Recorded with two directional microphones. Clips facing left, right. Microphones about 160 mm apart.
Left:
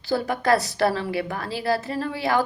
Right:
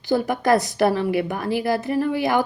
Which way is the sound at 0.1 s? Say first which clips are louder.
Right 3 dB; 20° right (ahead or behind).